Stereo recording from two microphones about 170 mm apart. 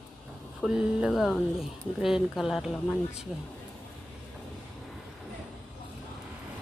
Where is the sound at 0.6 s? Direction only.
5° right (ahead or behind).